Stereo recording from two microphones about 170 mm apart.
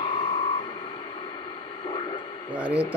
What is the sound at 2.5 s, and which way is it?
Speech, 10° right (ahead or behind).